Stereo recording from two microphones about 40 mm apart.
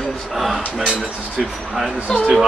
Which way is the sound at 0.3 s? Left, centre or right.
Centre.